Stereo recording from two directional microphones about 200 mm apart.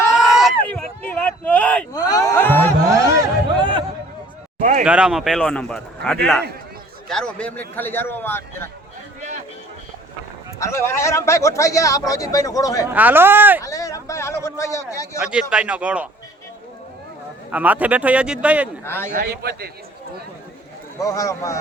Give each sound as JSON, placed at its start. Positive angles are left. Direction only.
{"t": 0.2, "sound": "a sound", "side_deg": 0}
{"t": 1.9, "sound": "a sound", "side_deg": 20}
{"t": 3.6, "sound": "a sound", "side_deg": -25}
{"t": 4.6, "sound": "a sound", "side_deg": -40}
{"t": 4.9, "sound": "speech", "side_deg": -5}
{"t": 10.6, "sound": "speech", "side_deg": 15}
{"t": 12.9, "sound": "speech", "side_deg": -10}
{"t": 13.6, "sound": "speech", "side_deg": 15}
{"t": 15.2, "sound": "speech", "side_deg": -5}
{"t": 17.5, "sound": "speech", "side_deg": -10}
{"t": 18.9, "sound": "speech", "side_deg": 10}
{"t": 19.1, "sound": "a man's voice", "side_deg": -55}
{"t": 21.0, "sound": "speech", "side_deg": 15}